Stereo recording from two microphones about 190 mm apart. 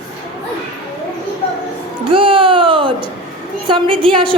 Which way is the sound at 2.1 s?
30° right (ahead or behind).